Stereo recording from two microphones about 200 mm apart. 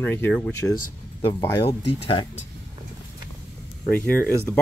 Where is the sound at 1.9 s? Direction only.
30° left (ahead or behind).